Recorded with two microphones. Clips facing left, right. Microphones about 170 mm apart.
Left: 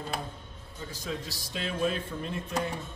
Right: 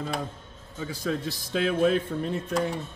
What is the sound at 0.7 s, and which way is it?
A man's voice, 90° right.